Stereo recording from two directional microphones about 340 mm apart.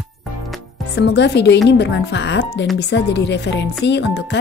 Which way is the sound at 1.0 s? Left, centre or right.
Left.